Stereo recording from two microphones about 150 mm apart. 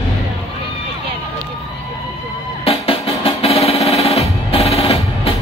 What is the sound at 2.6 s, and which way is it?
Music, 40° left (ahead or behind).